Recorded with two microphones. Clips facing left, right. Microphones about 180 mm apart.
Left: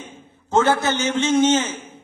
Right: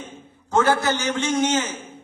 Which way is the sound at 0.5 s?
25° left (ahead or behind).